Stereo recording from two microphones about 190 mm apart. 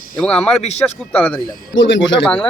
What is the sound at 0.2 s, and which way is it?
A man's voice, 5° left (ahead or behind).